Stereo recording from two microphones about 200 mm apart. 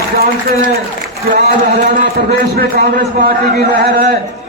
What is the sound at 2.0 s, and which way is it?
A man's voice, 50° right (ahead or behind).